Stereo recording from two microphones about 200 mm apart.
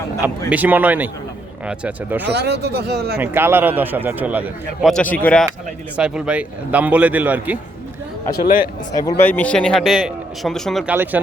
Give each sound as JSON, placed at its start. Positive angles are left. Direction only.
{"t": 0.2, "sound": "a man's voice", "side_deg": -10}
{"t": 2.3, "sound": "speech", "side_deg": -55}
{"t": 3.2, "sound": "a man's voice", "side_deg": -10}
{"t": 6.0, "sound": "a man's voice", "side_deg": -5}
{"t": 9.0, "sound": "a man's voice", "side_deg": 15}